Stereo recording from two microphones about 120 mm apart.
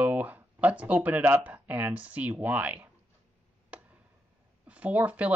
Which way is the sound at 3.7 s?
10° right (ahead or behind).